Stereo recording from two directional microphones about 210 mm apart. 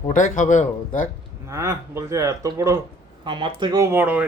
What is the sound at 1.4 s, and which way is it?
Speech, 15° right (ahead or behind).